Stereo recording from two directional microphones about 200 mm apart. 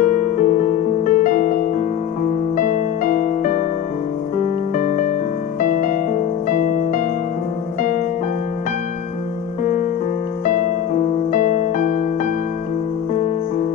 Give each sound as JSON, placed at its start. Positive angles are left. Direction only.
{"t": 0.0, "sound": "music", "side_deg": 40}
{"t": 9.6, "sound": "music", "side_deg": 40}
{"t": 11.3, "sound": "music", "side_deg": 40}